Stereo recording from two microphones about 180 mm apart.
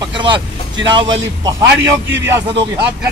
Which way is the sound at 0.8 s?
25° right (ahead or behind).